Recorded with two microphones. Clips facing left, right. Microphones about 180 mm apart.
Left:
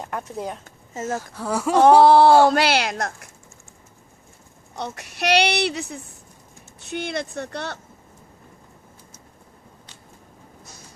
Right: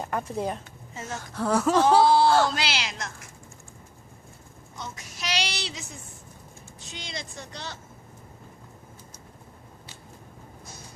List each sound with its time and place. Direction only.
0.0 s speech: centre (ahead or behind)
0.9 s speech: 45° left (ahead or behind)
1.4 s speech: 10° left (ahead or behind)
1.8 s speech: 60° left (ahead or behind)
4.7 s speech: 65° left (ahead or behind)